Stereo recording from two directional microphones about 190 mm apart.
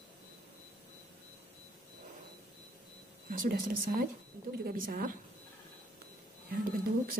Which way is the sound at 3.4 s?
50° right (ahead or behind).